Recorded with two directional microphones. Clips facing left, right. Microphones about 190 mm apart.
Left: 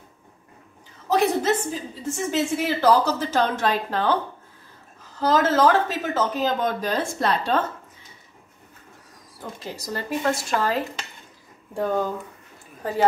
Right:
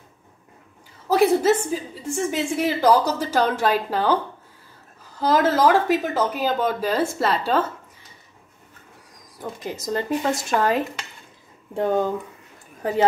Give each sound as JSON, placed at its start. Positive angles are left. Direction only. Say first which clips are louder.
{"t": 1.0, "sound": "speech", "louder": "right 4 dB", "side_deg": -10}
{"t": 5.2, "sound": "speech", "louder": "right 1 dB", "side_deg": -10}
{"t": 9.4, "sound": "speech", "louder": "right 4 dB", "side_deg": -15}